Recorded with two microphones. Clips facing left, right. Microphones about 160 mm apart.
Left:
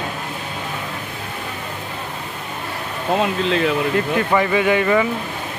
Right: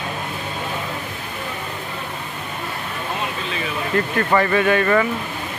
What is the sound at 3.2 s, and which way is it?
Speech, 90° left.